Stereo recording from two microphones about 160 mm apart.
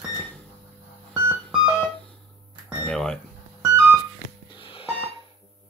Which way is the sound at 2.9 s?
5° left (ahead or behind).